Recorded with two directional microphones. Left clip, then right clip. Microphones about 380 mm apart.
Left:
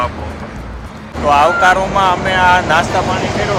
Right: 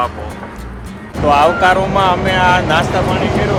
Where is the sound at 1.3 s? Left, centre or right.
Centre.